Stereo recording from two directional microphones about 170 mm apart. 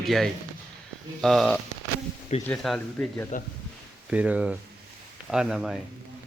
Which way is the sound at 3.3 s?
45° left (ahead or behind).